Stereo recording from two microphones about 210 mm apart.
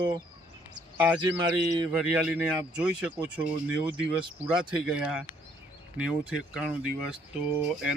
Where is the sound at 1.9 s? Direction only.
5° right (ahead or behind).